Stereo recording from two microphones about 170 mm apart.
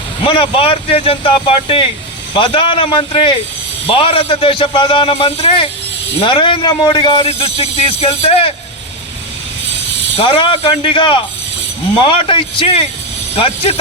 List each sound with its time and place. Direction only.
0.3 s a man's voice: 30° left (ahead or behind)
10.2 s a man's voice: 30° left (ahead or behind)